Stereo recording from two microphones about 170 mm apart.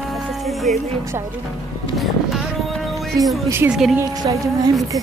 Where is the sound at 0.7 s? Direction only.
45° right (ahead or behind).